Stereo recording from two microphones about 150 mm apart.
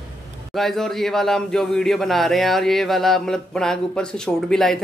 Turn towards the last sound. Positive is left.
turn(degrees=0)  # may be behind; listen again after turning